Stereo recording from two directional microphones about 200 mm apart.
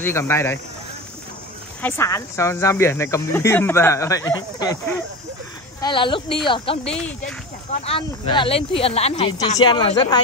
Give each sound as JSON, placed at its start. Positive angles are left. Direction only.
{"t": 0.0, "sound": "speech", "side_deg": 15}
{"t": 1.8, "sound": "speech", "side_deg": 10}
{"t": 5.8, "sound": "speech", "side_deg": 25}
{"t": 6.9, "sound": "speech", "side_deg": 5}
{"t": 7.7, "sound": "speech", "side_deg": 30}